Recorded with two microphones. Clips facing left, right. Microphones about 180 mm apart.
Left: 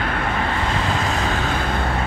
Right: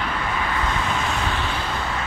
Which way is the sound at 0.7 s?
35° left (ahead or behind).